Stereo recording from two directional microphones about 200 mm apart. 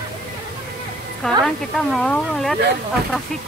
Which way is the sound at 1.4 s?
Centre (ahead or behind).